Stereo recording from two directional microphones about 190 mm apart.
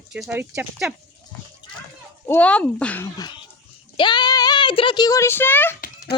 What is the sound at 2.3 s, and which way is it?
Speech, 5° left (ahead or behind).